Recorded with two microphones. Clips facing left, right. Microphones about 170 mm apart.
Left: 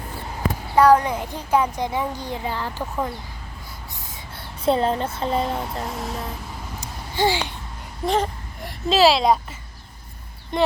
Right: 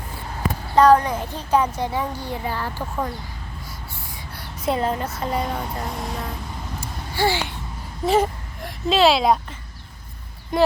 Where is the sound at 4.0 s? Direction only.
20° left (ahead or behind).